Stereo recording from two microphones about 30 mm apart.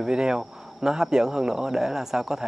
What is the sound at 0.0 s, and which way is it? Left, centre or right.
Speech, right.